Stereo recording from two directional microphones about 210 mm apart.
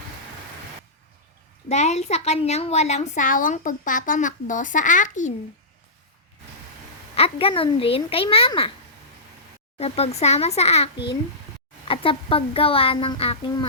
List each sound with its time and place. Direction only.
1.7 s a woman's voice: 30° left (ahead or behind)
7.2 s a child's voice: 25° left (ahead or behind)
9.7 s a child's voice: 30° left (ahead or behind)
11.9 s a child's voice: 25° left (ahead or behind)